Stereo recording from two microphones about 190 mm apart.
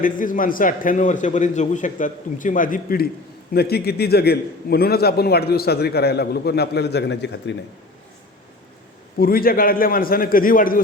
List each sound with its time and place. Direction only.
0.0 s a man's voice: 45° left (ahead or behind); by 7.5 s 65° left (ahead or behind)
9.1 s a man's voice: 50° left (ahead or behind)